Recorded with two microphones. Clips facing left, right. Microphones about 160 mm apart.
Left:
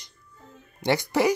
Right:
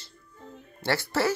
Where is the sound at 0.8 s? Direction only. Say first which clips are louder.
Left 4 dB; 15° left (ahead or behind).